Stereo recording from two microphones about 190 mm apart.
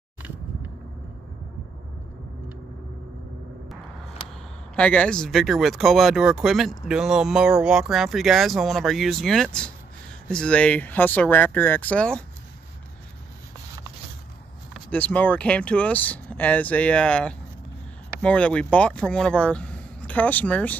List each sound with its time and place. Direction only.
4.7 s speech: 5° left (ahead or behind)
14.7 s speech: 10° left (ahead or behind)